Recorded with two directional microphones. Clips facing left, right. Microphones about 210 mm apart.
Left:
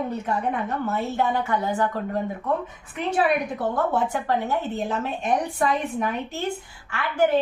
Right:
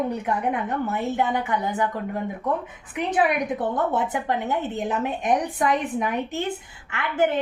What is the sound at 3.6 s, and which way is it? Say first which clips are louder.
A woman's voice: even; 20° right (ahead or behind).